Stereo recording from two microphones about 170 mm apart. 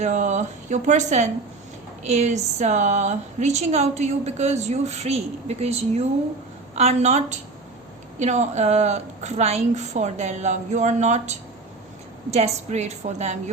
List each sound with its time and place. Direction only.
0.0 s a woman's voice: 45° right (ahead or behind)